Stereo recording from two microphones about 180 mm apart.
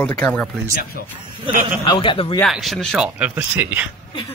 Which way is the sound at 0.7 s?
55° left (ahead or behind).